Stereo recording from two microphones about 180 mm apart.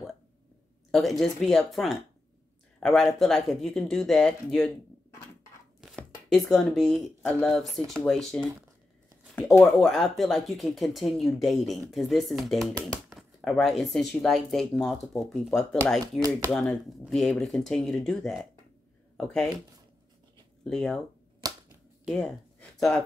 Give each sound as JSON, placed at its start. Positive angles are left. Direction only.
{"t": 0.9, "sound": "speech", "side_deg": 0}
{"t": 5.8, "sound": "speech", "side_deg": 0}
{"t": 9.8, "sound": "speech", "side_deg": 0}
{"t": 20.6, "sound": "speech", "side_deg": 5}
{"t": 21.4, "sound": "typewriter", "side_deg": -20}
{"t": 22.0, "sound": "a sound", "side_deg": 0}